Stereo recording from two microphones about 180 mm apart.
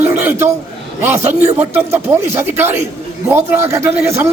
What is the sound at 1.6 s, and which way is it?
Speech, 10° right (ahead or behind).